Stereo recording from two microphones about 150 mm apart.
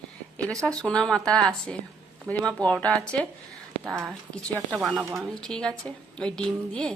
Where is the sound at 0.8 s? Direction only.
5° left (ahead or behind).